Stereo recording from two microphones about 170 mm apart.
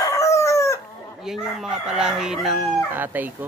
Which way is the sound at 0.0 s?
20° left (ahead or behind).